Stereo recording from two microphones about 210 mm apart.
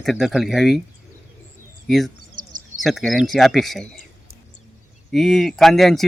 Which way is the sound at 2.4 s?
40° right (ahead or behind).